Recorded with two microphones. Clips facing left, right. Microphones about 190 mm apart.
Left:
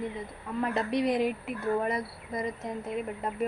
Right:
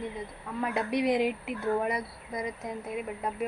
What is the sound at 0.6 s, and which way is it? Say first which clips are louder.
Speech: left 1 dB; 5° right (ahead or behind).